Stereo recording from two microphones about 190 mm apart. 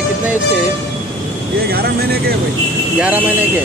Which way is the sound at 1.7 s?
55° right (ahead or behind).